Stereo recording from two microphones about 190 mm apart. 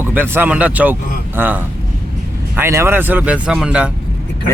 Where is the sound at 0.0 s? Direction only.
10° right (ahead or behind).